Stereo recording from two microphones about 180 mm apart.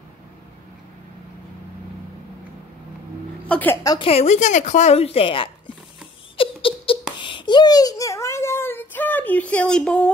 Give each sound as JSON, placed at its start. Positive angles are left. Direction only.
{"t": 3.4, "sound": "a woman's voice", "side_deg": 10}
{"t": 4.0, "sound": "a woman's voice", "side_deg": 35}
{"t": 6.3, "sound": "giggle", "side_deg": 30}